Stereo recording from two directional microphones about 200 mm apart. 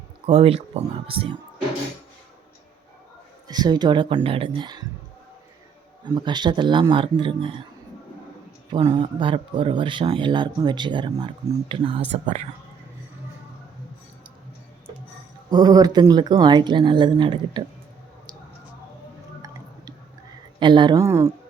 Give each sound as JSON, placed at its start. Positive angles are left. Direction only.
{"t": 0.3, "sound": "speech", "side_deg": -30}
{"t": 3.5, "sound": "speech", "side_deg": -20}
{"t": 6.1, "sound": "speech", "side_deg": -20}
{"t": 8.7, "sound": "speech", "side_deg": -25}
{"t": 15.4, "sound": "speech", "side_deg": -20}
{"t": 20.6, "sound": "a woman's voice", "side_deg": -25}